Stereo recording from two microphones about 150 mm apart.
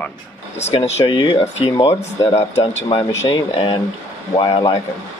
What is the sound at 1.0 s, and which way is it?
Speech, 30° left (ahead or behind).